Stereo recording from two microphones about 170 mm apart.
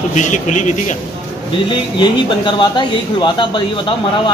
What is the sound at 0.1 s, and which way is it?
Speech, 45° left (ahead or behind).